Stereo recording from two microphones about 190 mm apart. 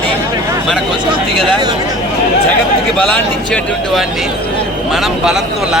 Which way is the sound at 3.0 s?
5° left (ahead or behind).